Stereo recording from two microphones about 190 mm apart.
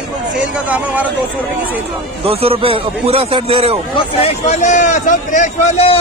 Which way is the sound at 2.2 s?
30° right (ahead or behind).